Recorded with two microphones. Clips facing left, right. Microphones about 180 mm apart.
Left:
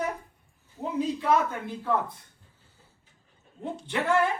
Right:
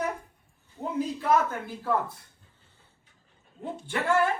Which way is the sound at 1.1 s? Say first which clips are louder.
Right 2 dB; 5° right (ahead or behind).